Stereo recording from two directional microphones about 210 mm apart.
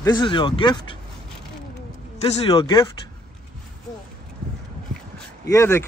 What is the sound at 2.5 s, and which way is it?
Speech, 20° left (ahead or behind).